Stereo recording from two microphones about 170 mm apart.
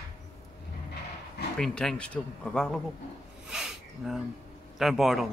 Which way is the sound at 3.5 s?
5° right (ahead or behind).